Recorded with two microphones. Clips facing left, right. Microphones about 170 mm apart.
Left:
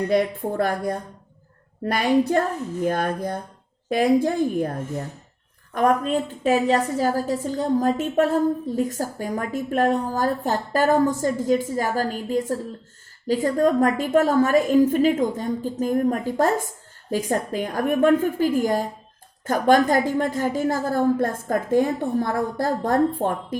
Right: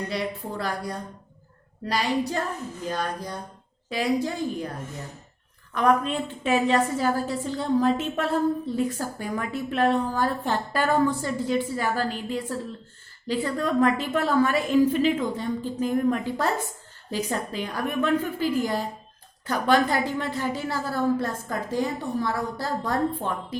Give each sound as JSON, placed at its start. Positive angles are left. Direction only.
{"t": 0.1, "sound": "a woman's voice", "side_deg": 50}